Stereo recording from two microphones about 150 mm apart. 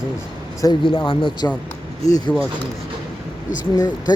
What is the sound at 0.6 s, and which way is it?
Speech, 30° left (ahead or behind).